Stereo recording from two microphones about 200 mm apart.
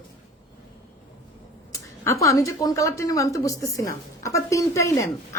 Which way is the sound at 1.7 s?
15° left (ahead or behind).